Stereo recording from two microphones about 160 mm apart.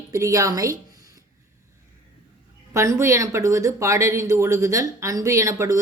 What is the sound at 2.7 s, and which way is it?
Speech, 20° right (ahead or behind).